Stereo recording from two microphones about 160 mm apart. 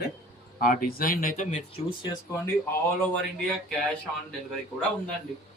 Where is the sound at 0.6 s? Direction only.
60° left (ahead or behind).